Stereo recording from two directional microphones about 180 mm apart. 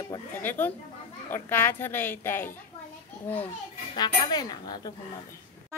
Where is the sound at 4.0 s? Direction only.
25° left (ahead or behind).